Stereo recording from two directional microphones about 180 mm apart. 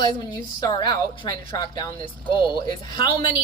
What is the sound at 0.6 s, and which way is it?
Speech, 20° left (ahead or behind).